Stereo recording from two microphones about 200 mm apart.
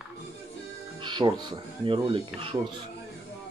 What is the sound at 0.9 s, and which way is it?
Speech, 25° right (ahead or behind).